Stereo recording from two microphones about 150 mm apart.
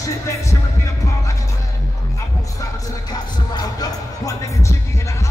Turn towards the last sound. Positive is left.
turn(degrees=25)  # may be behind; listen again after turning